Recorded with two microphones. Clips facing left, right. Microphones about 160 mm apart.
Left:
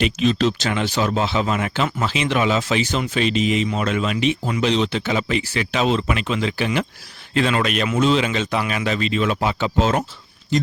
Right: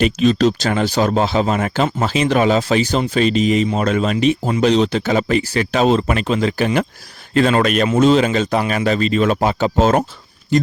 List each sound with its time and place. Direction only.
0.0 s a man's voice: 40° right (ahead or behind)